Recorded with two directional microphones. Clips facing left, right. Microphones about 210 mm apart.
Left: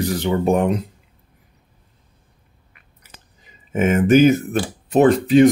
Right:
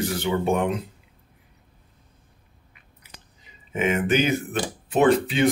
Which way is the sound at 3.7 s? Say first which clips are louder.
Left 8 dB; 45° left (ahead or behind).